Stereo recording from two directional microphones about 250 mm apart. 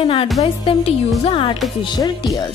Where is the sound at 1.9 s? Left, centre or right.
Centre.